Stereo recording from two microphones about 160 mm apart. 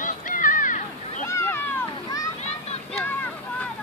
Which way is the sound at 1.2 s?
15° left (ahead or behind).